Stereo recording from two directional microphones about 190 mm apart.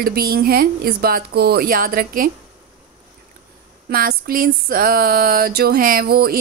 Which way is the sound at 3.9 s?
50° right (ahead or behind).